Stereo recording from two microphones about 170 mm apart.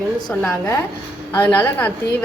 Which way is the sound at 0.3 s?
10° left (ahead or behind).